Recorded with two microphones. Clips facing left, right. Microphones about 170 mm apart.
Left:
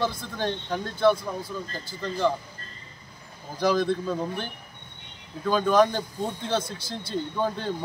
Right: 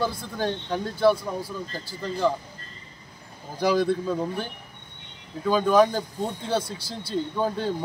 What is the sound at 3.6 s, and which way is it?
Speech, 5° right (ahead or behind).